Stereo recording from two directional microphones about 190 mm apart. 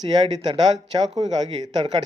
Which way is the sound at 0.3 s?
20° right (ahead or behind).